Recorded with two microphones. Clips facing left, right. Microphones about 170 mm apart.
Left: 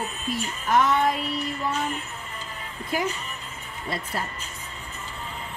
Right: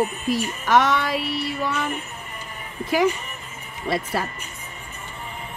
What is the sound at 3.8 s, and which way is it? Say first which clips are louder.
Speech: right 7 dB; 85° right.